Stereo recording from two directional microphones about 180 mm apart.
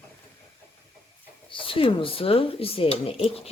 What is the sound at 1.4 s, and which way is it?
Speech, 30° left (ahead or behind).